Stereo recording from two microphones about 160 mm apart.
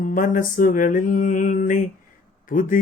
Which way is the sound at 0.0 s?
55° left (ahead or behind).